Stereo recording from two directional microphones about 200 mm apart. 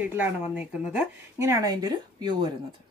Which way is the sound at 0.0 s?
5° right (ahead or behind).